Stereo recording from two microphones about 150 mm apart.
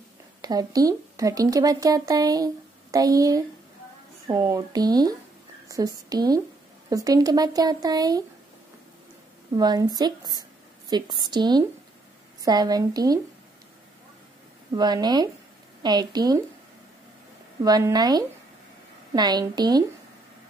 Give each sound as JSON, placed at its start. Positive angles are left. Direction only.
{"t": 0.4, "sound": "speech", "side_deg": -25}
{"t": 9.5, "sound": "speech", "side_deg": -25}
{"t": 14.8, "sound": "speech", "side_deg": -25}
{"t": 17.6, "sound": "speech", "side_deg": -25}